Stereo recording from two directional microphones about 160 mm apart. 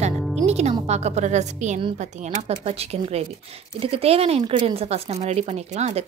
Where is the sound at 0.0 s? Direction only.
45° right (ahead or behind).